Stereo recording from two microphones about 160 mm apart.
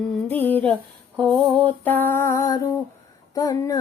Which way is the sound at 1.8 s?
10° left (ahead or behind).